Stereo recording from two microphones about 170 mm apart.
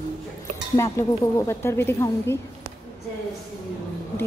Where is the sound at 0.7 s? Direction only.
15° left (ahead or behind).